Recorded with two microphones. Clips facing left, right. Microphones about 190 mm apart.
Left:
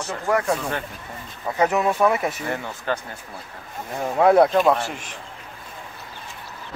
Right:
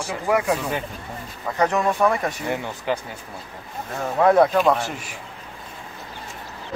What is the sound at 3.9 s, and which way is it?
Speech, 10° left (ahead or behind).